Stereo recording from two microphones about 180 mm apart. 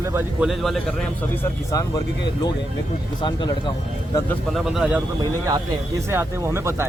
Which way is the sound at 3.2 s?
25° left (ahead or behind).